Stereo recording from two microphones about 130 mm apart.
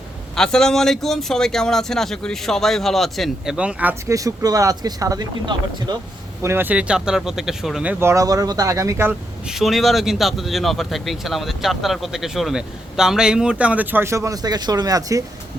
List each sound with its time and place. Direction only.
0.3 s speech: 5° left (ahead or behind); by 4.1 s 10° right (ahead or behind)
4.1 s speech: 25° right (ahead or behind)
6.4 s speech: 15° right (ahead or behind)
7.9 s speech: 20° right (ahead or behind)
9.5 s speech: centre (ahead or behind); by 15.2 s 30° right (ahead or behind)